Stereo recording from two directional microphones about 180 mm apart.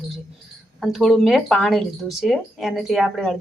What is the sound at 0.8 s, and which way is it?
A woman's voice, centre (ahead or behind).